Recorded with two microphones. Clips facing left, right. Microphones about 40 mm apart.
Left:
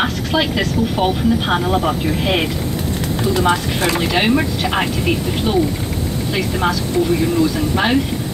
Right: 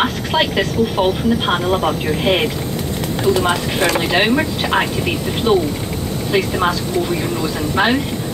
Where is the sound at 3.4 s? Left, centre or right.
Centre.